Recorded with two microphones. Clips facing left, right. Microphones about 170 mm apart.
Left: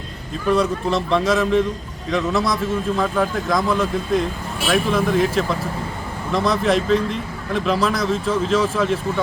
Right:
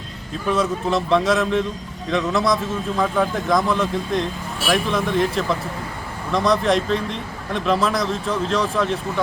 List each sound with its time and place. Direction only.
0.4 s a man's voice: centre (ahead or behind)